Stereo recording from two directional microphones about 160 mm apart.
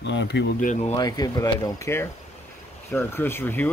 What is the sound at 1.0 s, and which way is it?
Speech, 25° left (ahead or behind).